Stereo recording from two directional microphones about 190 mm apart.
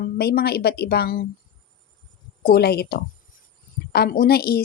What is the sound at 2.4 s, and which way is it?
Speech, 55° left (ahead or behind).